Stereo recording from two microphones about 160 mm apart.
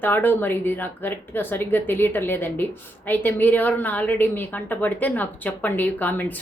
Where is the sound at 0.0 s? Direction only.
10° left (ahead or behind).